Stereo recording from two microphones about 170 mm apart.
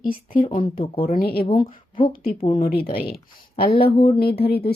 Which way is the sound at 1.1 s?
60° left (ahead or behind).